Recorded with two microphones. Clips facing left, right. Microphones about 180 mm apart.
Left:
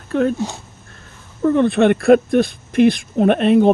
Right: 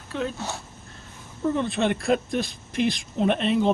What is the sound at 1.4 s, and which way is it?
Speech, 60° left (ahead or behind).